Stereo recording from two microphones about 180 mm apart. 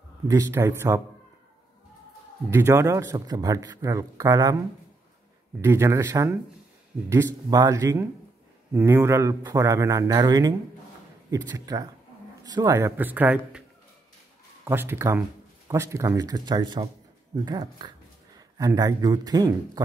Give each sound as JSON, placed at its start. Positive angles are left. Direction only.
{"t": 0.3, "sound": "speech", "side_deg": -15}
{"t": 2.5, "sound": "speech", "side_deg": -15}
{"t": 5.6, "sound": "speech", "side_deg": -15}